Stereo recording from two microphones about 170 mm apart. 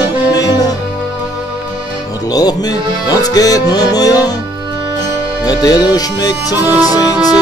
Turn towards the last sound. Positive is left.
turn(degrees=20)  # may be behind; listen again after turning